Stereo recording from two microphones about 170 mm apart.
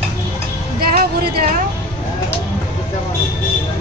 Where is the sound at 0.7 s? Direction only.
60° right (ahead or behind).